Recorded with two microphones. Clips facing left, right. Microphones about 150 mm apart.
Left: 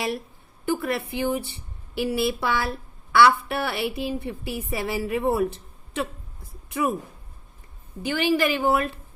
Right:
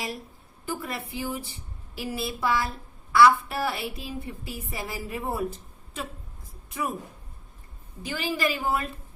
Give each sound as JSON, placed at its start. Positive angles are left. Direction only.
{"t": 0.6, "sound": "a woman's voice", "side_deg": 70}
{"t": 8.0, "sound": "a woman's voice", "side_deg": 70}